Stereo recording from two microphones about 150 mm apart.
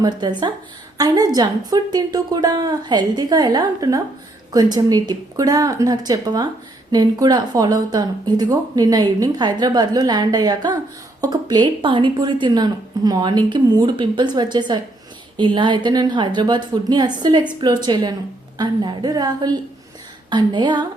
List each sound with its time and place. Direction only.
0.0 s speech: 30° right (ahead or behind)